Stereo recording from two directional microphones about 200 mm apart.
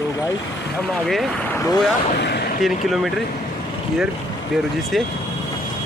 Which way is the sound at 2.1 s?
55° left (ahead or behind).